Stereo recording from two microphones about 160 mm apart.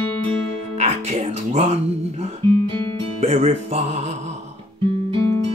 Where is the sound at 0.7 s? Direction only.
40° right (ahead or behind).